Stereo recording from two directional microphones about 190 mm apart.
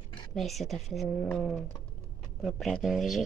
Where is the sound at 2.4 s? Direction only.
Centre (ahead or behind).